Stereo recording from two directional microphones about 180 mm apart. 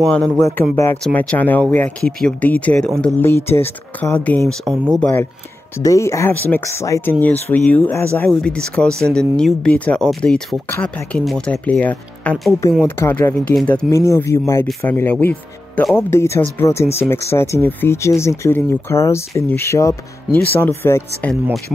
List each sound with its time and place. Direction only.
0.0 s speech: 5° left (ahead or behind)
0.4 s speech: 15° left (ahead or behind)
5.8 s speech: 15° left (ahead or behind)
13.8 s speech: 15° left (ahead or behind)